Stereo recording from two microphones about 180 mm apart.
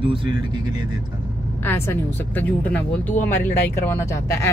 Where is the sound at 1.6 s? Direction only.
15° left (ahead or behind).